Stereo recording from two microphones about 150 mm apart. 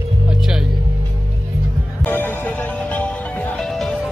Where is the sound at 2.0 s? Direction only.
10° left (ahead or behind).